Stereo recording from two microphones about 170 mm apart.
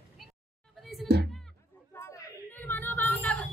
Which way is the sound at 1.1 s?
80° right.